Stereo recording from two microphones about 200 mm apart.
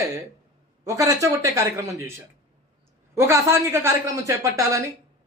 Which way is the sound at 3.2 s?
15° right (ahead or behind).